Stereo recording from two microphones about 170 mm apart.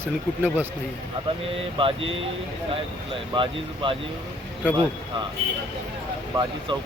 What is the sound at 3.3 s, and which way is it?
Speech, 30° right (ahead or behind).